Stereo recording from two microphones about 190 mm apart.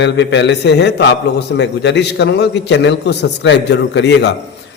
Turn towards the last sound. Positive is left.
turn(degrees=65)  # may be behind; listen again after turning